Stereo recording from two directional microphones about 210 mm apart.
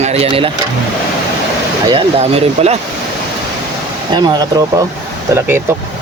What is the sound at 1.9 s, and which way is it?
Speech, 25° right (ahead or behind).